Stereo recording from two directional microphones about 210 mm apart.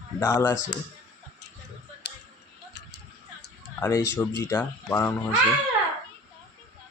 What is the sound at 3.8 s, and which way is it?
Speech, 15° left (ahead or behind).